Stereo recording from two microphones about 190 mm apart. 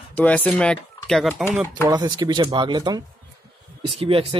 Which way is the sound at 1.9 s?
20° right (ahead or behind).